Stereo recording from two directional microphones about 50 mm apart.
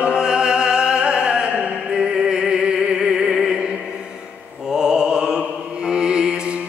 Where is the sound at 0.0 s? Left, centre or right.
Centre.